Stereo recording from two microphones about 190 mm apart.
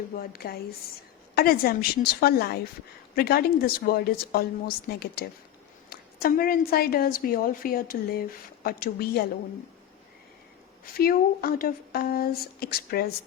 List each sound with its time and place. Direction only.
0.2 s a woman's voice: 50° left (ahead or behind)
10.9 s a woman's voice: 50° left (ahead or behind)